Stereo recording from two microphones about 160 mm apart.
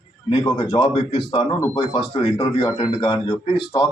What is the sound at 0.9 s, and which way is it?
A man's voice, 35° left (ahead or behind).